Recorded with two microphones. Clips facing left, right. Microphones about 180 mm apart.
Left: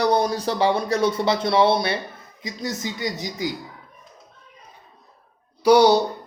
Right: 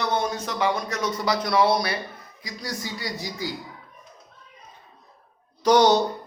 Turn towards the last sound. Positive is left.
turn(degrees=10)  # may be behind; listen again after turning